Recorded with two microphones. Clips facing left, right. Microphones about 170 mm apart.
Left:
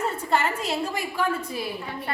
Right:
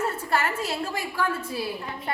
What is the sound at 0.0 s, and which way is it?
A woman's voice, 20° left (ahead or behind).